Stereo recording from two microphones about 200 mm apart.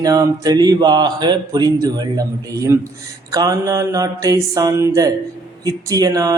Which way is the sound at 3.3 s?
15° right (ahead or behind).